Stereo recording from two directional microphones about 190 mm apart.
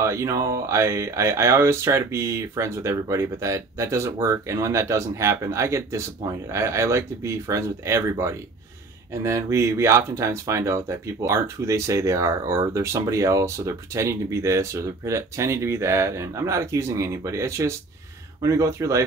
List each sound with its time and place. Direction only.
0.0 s speech: 15° right (ahead or behind)